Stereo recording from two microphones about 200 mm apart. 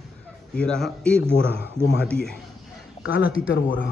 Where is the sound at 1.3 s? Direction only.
60° left (ahead or behind).